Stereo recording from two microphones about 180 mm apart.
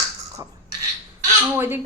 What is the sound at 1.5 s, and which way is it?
Speech, 10° right (ahead or behind).